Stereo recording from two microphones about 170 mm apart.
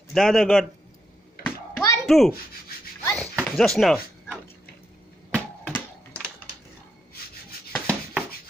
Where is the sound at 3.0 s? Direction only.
15° left (ahead or behind).